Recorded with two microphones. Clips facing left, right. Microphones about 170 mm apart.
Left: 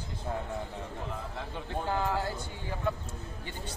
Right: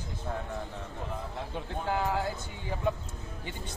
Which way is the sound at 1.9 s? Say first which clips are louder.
Right 1 dB; 15° right (ahead or behind).